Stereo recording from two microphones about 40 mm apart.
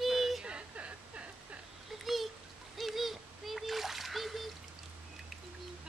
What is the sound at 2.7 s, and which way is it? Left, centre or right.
Splash, centre.